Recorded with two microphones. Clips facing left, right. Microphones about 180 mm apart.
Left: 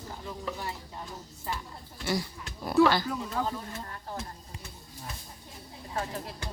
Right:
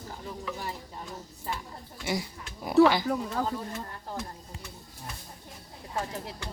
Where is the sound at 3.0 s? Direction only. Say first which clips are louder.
Right 3 dB; 45° right (ahead or behind).